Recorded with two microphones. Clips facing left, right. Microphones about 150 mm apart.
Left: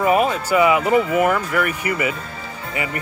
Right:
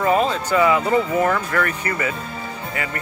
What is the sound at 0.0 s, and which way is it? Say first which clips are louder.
Speech: left 1 dB; 10° left (ahead or behind).